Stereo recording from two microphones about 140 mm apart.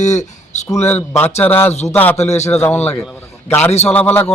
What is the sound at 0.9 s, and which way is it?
Speech, 10° left (ahead or behind).